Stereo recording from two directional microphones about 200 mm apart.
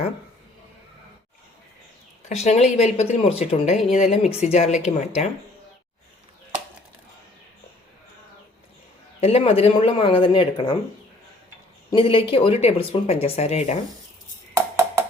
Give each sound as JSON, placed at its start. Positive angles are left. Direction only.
{"t": 2.3, "sound": "speech", "side_deg": 35}
{"t": 9.2, "sound": "speech", "side_deg": 30}
{"t": 11.9, "sound": "speech", "side_deg": 25}
{"t": 14.5, "sound": "a sound", "side_deg": -10}